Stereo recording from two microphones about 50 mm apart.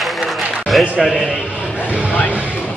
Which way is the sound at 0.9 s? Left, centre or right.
Centre.